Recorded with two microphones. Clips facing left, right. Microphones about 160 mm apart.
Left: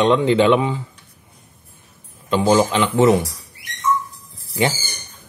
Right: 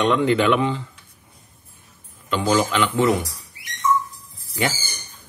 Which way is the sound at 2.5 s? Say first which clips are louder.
Left 1 dB; 25° left (ahead or behind).